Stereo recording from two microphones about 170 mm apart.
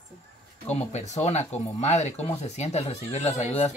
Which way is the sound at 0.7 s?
40° left (ahead or behind).